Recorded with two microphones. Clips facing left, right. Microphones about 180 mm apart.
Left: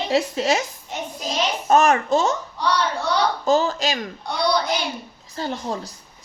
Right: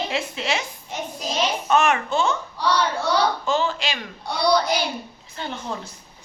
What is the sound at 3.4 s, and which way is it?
Speech, 40° left (ahead or behind).